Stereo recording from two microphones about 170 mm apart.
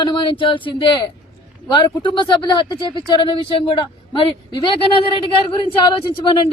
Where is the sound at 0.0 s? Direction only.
30° left (ahead or behind).